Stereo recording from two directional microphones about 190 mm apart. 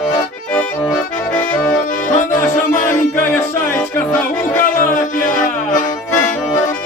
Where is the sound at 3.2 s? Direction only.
10° left (ahead or behind).